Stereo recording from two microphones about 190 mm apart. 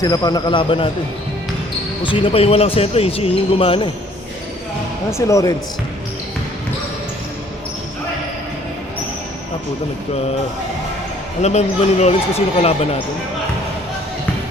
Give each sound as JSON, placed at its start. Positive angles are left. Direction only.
{"t": 0.0, "sound": "speech", "side_deg": 20}
{"t": 2.0, "sound": "speech", "side_deg": 25}
{"t": 5.1, "sound": "speech", "side_deg": 15}
{"t": 11.4, "sound": "speech", "side_deg": 35}